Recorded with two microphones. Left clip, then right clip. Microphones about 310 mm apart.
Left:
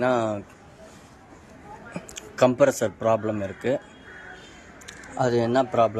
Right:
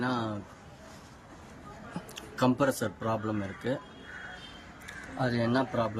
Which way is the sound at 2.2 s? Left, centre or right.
Centre.